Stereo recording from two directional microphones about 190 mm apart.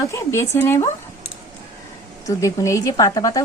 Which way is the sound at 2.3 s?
15° left (ahead or behind).